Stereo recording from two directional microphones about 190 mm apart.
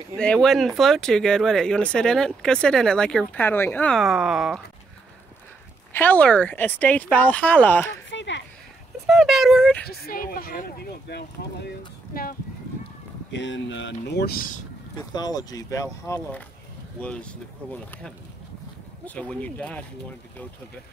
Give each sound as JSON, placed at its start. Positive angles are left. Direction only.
{"t": 0.1, "sound": "speech", "side_deg": 5}
{"t": 5.9, "sound": "speech", "side_deg": 10}
{"t": 8.1, "sound": "a sound", "side_deg": 70}
{"t": 9.0, "sound": "speech", "side_deg": 0}
{"t": 9.8, "sound": "speech", "side_deg": 50}
{"t": 13.3, "sound": "speech", "side_deg": 70}
{"t": 15.1, "sound": "speech", "side_deg": 20}
{"t": 17.0, "sound": "speech", "side_deg": 5}